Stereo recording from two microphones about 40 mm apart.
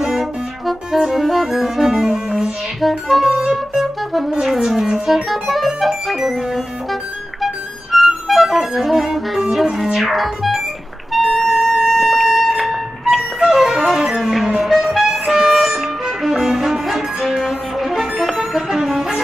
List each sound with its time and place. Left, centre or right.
0.0 s music: centre
2.0 s music: centre
2.8 s music: centre
7.9 s music: centre
11.9 s alarm: centre
13.5 s music: centre